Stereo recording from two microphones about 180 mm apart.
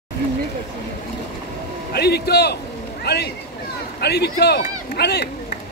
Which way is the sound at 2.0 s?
60° left (ahead or behind).